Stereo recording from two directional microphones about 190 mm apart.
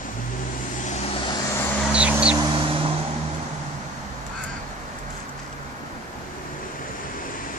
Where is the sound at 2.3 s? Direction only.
25° right (ahead or behind).